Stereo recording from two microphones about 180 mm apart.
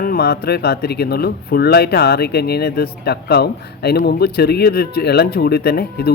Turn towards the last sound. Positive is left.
turn(degrees=60)  # may be behind; listen again after turning